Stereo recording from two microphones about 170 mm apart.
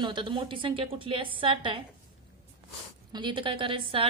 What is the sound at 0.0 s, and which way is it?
A woman's voice, 30° right (ahead or behind).